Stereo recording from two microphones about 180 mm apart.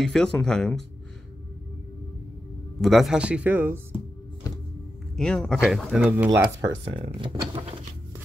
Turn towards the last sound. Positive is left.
turn(degrees=-30)  # may be behind; listen again after turning